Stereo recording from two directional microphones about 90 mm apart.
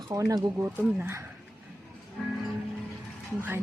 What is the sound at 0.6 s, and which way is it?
Speech, 25° right (ahead or behind).